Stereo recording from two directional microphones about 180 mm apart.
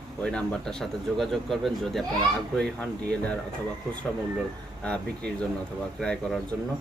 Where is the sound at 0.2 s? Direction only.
5° left (ahead or behind).